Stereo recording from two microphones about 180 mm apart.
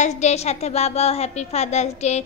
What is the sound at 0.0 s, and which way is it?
A woman's voice, 40° left (ahead or behind).